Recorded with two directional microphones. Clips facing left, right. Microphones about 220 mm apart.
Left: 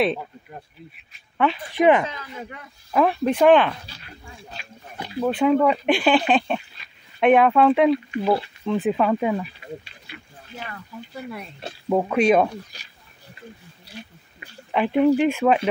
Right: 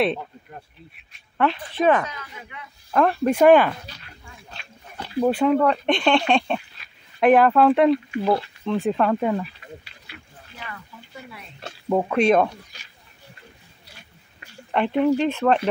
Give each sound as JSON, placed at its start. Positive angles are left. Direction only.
{"t": 0.0, "sound": "speech", "side_deg": 0}
{"t": 1.7, "sound": "speech", "side_deg": 15}
{"t": 2.4, "sound": "a man's voice", "side_deg": 45}
{"t": 2.9, "sound": "speech", "side_deg": 5}
{"t": 3.3, "sound": "speech", "side_deg": -5}
{"t": 5.2, "sound": "speech", "side_deg": -5}
{"t": 5.6, "sound": "speech", "side_deg": 5}
{"t": 11.9, "sound": "speech", "side_deg": 5}
{"t": 15.0, "sound": "speech", "side_deg": 15}